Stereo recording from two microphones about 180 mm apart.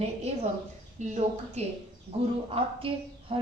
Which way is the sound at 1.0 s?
40° right (ahead or behind).